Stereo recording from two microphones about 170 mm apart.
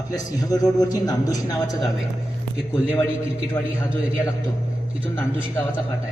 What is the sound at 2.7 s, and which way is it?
Speech, 10° left (ahead or behind).